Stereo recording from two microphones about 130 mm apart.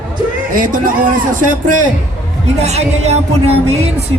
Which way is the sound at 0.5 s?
90° right.